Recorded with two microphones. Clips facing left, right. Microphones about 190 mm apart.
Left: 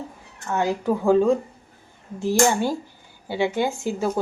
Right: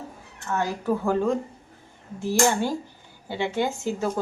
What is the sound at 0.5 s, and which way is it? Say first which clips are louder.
Speech: left 3 dB; 15° left (ahead or behind).